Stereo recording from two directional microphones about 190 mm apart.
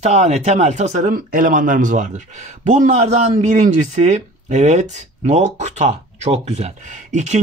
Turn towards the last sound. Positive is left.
turn(degrees=-35)  # may be behind; listen again after turning